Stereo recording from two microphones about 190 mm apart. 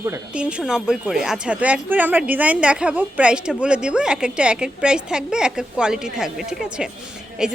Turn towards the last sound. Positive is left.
turn(degrees=-5)  # may be behind; listen again after turning